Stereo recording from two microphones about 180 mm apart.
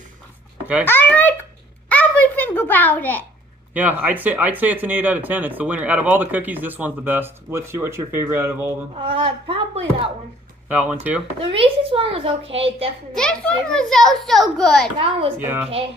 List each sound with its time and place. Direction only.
0.8 s a child's voice: 10° left (ahead or behind)
1.9 s babbling: 10° left (ahead or behind)
3.7 s speech: 10° right (ahead or behind)
8.9 s speech: 30° right (ahead or behind)
10.7 s speech: 10° right (ahead or behind)
11.3 s a child's voice: 30° right (ahead or behind)
13.1 s a child's voice: 5° left (ahead or behind)
15.0 s a child's voice: 30° right (ahead or behind)
15.3 s speech: 10° right (ahead or behind)